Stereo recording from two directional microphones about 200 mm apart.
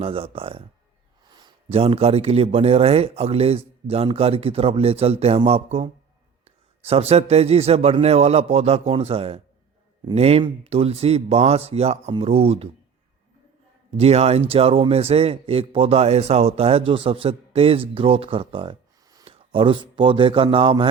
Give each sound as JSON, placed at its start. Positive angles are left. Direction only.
{"t": 0.0, "sound": "a man's voice", "side_deg": -30}
{"t": 13.9, "sound": "speech", "side_deg": -30}